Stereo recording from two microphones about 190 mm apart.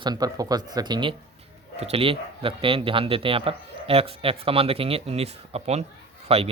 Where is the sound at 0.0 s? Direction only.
20° right (ahead or behind).